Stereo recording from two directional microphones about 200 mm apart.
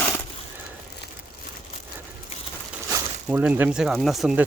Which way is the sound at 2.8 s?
15° right (ahead or behind).